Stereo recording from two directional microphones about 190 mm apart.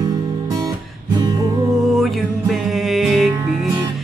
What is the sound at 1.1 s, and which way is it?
Music, 20° right (ahead or behind).